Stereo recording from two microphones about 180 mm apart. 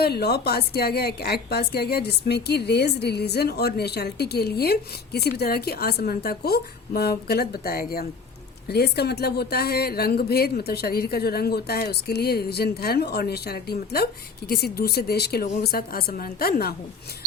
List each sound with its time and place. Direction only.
0.0 s a woman's voice: 60° left (ahead or behind)